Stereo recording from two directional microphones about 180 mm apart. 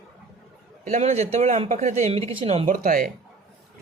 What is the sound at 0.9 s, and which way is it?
Speech, 40° right (ahead or behind).